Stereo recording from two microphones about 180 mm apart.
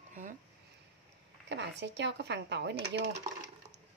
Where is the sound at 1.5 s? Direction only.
75° right (ahead or behind).